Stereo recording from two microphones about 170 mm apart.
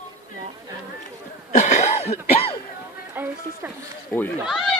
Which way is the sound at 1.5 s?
45° left (ahead or behind).